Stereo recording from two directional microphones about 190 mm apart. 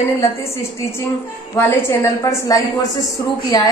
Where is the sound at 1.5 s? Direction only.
15° left (ahead or behind).